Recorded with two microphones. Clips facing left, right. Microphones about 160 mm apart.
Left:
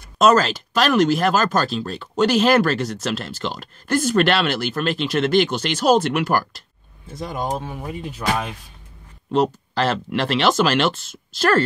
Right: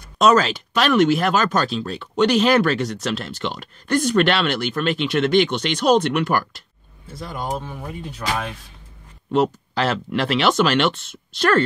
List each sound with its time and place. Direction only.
0.2 s speech: centre (ahead or behind)
7.2 s speech: 20° left (ahead or behind)
9.3 s speech: centre (ahead or behind)